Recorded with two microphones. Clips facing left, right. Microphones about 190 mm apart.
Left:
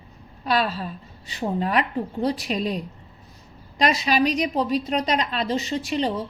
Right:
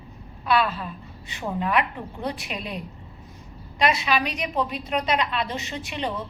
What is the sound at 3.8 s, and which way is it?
A woman's voice, 40° left (ahead or behind).